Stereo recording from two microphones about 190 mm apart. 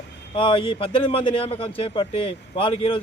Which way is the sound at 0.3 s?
25° left (ahead or behind).